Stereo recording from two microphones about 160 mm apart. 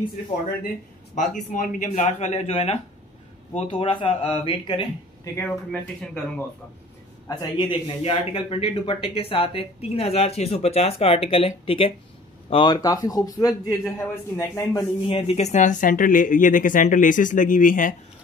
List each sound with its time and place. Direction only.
1.1 s a man's voice: 50° left (ahead or behind); by 4.8 s 30° left (ahead or behind)
5.2 s speech: 15° left (ahead or behind)
7.2 s a man's voice: 25° left (ahead or behind)
15.0 s speech: 40° left (ahead or behind); by 17.9 s 55° left (ahead or behind)